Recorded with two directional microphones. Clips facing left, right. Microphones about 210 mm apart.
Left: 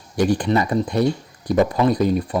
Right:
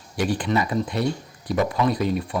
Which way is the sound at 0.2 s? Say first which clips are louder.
Left 5 dB; 40° left (ahead or behind).